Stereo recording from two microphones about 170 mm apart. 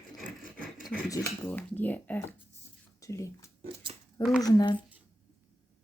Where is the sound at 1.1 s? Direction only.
15° left (ahead or behind).